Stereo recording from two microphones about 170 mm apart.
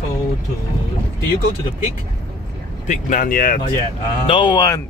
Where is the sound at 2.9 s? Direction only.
50° left (ahead or behind).